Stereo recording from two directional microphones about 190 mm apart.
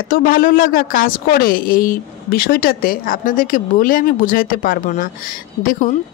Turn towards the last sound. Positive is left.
turn(degrees=45)  # may be behind; listen again after turning